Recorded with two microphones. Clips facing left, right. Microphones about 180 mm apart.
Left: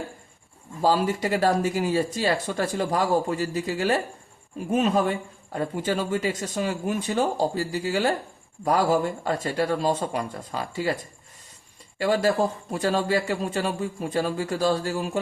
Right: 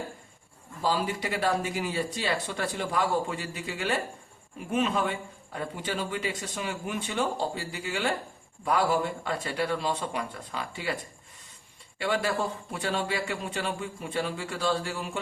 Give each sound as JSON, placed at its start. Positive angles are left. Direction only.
{"t": 0.8, "sound": "a man's voice", "side_deg": 45}
{"t": 11.9, "sound": "a man's voice", "side_deg": 40}